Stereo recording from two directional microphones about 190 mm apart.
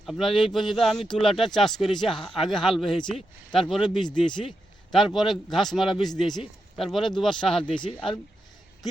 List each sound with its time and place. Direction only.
0.0 s speech: centre (ahead or behind)
7.6 s speech: 25° left (ahead or behind)